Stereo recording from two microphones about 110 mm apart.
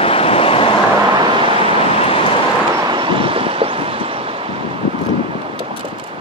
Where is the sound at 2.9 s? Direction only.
50° right (ahead or behind).